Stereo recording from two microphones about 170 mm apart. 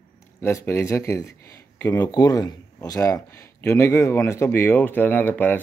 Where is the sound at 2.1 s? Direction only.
25° left (ahead or behind).